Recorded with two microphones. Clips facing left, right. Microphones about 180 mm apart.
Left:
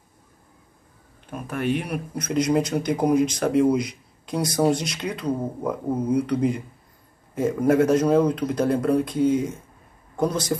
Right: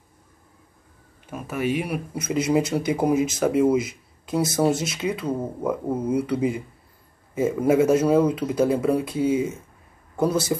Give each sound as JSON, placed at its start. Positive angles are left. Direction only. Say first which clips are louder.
{"t": 1.2, "sound": "a man's voice", "louder": "even", "side_deg": -5}